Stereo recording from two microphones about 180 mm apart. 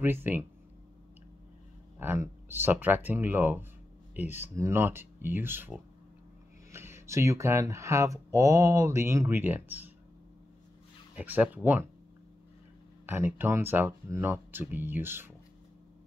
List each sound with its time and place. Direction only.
0.0 s speech: 10° right (ahead or behind)
2.0 s speech: 15° right (ahead or behind)
11.1 s speech: 10° right (ahead or behind)
13.0 s speech: 10° right (ahead or behind)